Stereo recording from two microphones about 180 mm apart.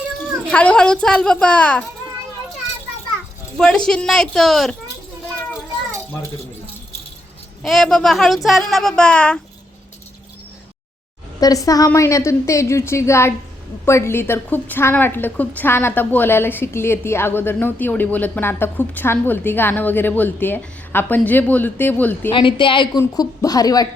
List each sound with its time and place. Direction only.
0.5 s speech: 5° left (ahead or behind)
3.6 s speech: 5° left (ahead or behind)
7.6 s speech: centre (ahead or behind)
11.3 s a woman's voice: 20° left (ahead or behind)
22.3 s a woman's voice: 25° left (ahead or behind)